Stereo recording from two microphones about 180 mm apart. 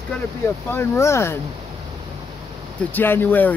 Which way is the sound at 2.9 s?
10° left (ahead or behind).